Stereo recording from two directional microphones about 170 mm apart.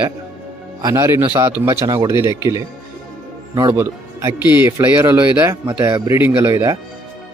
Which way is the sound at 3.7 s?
15° right (ahead or behind).